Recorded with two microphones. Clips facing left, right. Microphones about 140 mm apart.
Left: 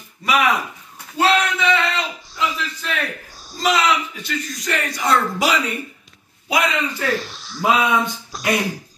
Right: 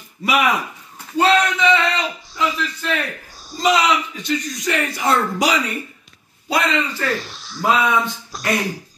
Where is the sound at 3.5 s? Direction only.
Centre (ahead or behind).